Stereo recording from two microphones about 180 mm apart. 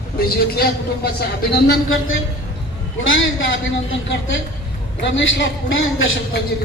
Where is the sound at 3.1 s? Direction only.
90° left.